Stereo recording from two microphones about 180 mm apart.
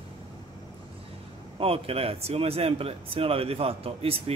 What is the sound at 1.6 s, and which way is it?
Speech, 35° right (ahead or behind).